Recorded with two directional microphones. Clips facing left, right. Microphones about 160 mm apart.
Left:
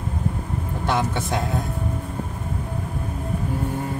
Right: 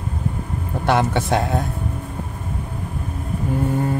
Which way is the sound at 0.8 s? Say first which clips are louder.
Right 5 dB; 70° right (ahead or behind).